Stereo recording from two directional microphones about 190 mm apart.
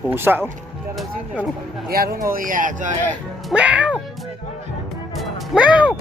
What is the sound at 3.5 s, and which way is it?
Speech, 5° right (ahead or behind).